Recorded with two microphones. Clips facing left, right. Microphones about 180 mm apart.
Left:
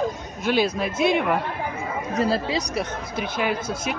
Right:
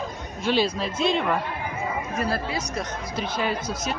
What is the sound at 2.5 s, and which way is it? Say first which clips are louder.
Speech: left 4 dB; 70° left (ahead or behind).